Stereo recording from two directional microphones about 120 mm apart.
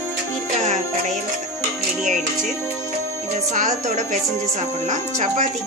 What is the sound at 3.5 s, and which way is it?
Music, 85° right.